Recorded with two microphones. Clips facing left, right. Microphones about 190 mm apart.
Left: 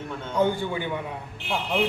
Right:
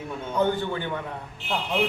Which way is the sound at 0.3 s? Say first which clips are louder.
Left 1 dB; 10° left (ahead or behind).